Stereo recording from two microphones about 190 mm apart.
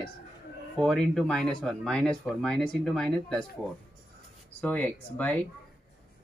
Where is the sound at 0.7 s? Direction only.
5° left (ahead or behind).